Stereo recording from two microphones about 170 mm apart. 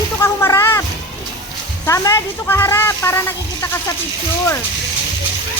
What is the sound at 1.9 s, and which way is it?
A woman's voice, 20° left (ahead or behind).